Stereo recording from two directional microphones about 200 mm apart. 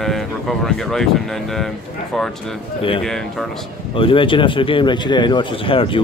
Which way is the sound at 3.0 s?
Centre (ahead or behind).